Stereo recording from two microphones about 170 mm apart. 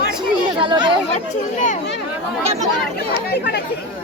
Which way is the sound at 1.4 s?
45° left (ahead or behind).